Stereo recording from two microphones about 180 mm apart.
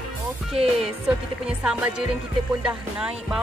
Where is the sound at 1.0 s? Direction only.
5° right (ahead or behind).